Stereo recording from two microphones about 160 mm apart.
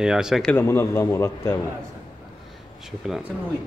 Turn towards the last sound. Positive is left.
turn(degrees=-5)  # may be behind; listen again after turning